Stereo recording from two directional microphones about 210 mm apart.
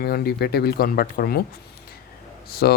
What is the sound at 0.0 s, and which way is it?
Speech, 45° left (ahead or behind).